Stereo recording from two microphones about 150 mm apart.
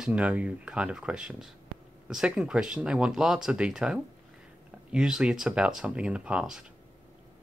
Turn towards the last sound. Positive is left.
turn(degrees=-5)  # may be behind; listen again after turning